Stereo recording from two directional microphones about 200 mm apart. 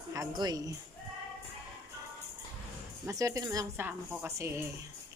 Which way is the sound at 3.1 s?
15° right (ahead or behind).